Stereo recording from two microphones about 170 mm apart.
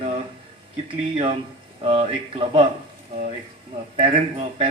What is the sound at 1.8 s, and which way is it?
Speech, 35° right (ahead or behind).